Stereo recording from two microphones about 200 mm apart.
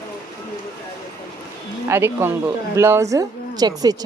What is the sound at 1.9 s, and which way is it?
Speech, 10° right (ahead or behind).